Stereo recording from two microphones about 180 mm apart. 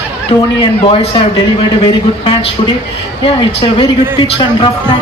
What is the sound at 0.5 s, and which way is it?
Speech, 30° left (ahead or behind).